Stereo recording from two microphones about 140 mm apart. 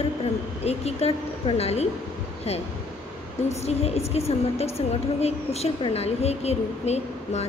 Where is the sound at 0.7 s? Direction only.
50° left (ahead or behind).